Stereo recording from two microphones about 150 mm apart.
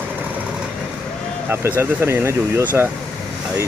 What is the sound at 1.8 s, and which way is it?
Speech, 15° right (ahead or behind).